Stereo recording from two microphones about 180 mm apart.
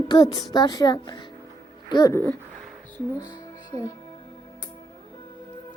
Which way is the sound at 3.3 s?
20° left (ahead or behind).